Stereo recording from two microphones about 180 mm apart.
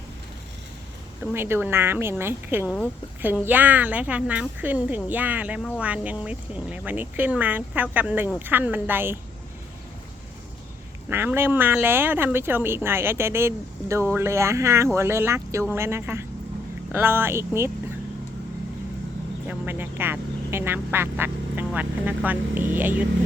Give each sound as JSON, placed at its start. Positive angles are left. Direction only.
{"t": 1.2, "sound": "speech", "side_deg": -10}
{"t": 11.1, "sound": "speech", "side_deg": -10}
{"t": 19.5, "sound": "speech", "side_deg": -10}